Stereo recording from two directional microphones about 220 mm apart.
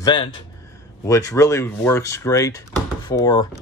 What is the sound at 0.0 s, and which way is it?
Speech, 20° left (ahead or behind).